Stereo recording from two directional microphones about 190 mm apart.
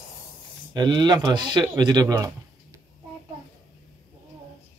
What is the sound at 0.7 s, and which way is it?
Speech, 25° right (ahead or behind).